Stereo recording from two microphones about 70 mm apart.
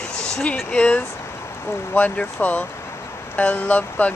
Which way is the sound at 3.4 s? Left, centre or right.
Left.